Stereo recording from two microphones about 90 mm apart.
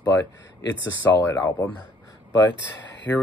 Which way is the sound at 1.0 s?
30° left (ahead or behind).